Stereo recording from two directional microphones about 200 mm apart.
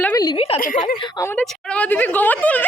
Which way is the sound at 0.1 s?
20° left (ahead or behind).